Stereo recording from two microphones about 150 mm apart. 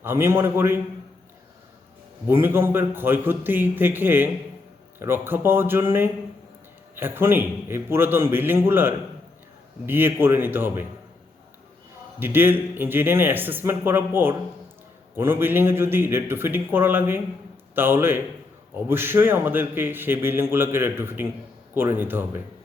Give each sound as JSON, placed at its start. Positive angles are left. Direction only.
{"t": 0.0, "sound": "a man's voice", "side_deg": -15}
{"t": 2.2, "sound": "a man's voice", "side_deg": -15}
{"t": 12.2, "sound": "a man's voice", "side_deg": -15}